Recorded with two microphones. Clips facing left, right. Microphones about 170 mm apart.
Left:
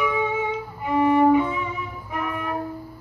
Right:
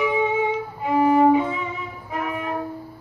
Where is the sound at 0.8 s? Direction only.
25° right (ahead or behind).